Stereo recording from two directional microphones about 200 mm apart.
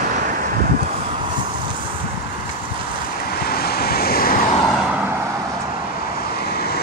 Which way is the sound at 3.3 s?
50° left (ahead or behind).